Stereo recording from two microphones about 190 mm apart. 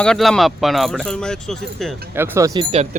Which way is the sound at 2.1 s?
10° right (ahead or behind).